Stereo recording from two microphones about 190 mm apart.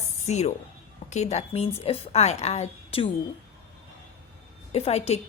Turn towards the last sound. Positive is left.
turn(degrees=35)  # may be behind; listen again after turning